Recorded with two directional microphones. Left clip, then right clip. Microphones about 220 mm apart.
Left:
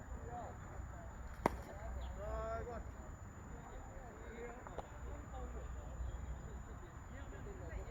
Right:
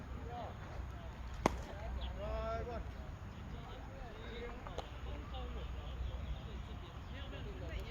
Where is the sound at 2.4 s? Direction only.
20° left (ahead or behind).